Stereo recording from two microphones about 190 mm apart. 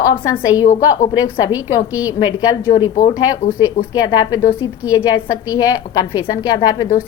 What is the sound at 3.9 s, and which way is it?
A woman's voice, 20° left (ahead or behind).